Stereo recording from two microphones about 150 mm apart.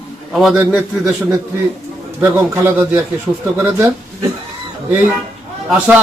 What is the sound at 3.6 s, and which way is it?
Speech, 15° right (ahead or behind).